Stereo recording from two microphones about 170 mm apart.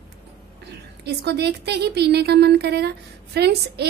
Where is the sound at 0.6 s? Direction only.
75° right (ahead or behind).